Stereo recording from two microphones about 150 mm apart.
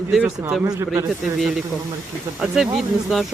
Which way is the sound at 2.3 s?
Centre (ahead or behind).